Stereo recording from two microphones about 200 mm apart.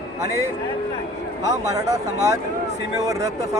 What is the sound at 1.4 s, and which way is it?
Speech, 15° right (ahead or behind).